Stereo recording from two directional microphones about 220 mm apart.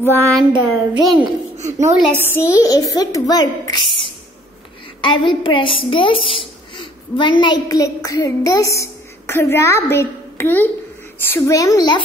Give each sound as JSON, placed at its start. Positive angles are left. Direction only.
{"t": 0.0, "sound": "a child's voice", "side_deg": 10}
{"t": 0.5, "sound": "a sound", "side_deg": -20}
{"t": 2.0, "sound": "a woman's voice", "side_deg": 0}
{"t": 2.2, "sound": "a child's voice", "side_deg": 10}
{"t": 5.0, "sound": "a woman's voice", "side_deg": 20}